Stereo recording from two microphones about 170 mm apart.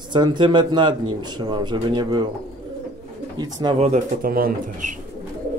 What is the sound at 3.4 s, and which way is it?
Speech, 25° right (ahead or behind).